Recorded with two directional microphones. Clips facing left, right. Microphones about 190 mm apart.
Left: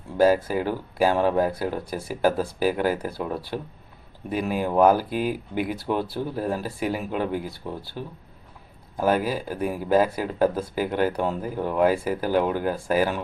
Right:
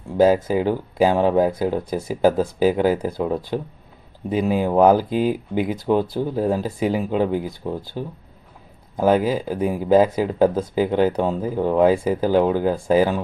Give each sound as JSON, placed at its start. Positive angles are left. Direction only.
{"t": 0.4, "sound": "speech", "side_deg": -15}